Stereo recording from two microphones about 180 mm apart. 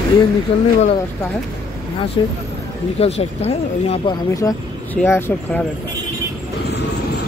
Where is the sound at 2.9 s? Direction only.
35° left (ahead or behind).